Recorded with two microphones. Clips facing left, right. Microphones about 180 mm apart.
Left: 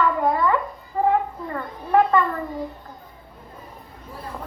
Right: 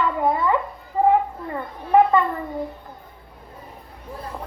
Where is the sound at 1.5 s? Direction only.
20° right (ahead or behind).